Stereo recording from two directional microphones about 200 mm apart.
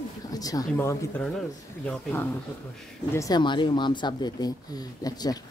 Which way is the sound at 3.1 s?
20° left (ahead or behind).